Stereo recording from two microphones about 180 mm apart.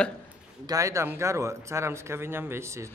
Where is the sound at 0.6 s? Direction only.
20° right (ahead or behind).